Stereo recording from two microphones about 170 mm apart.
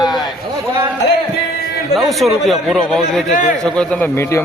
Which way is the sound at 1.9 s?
Centre (ahead or behind).